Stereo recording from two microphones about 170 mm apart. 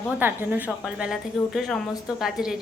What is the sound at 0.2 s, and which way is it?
A woman's voice, 10° right (ahead or behind).